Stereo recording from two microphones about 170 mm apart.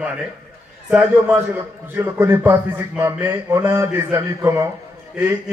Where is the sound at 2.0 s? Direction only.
15° right (ahead or behind).